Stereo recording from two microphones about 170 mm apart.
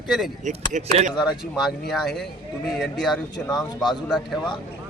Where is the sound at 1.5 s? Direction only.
Centre (ahead or behind).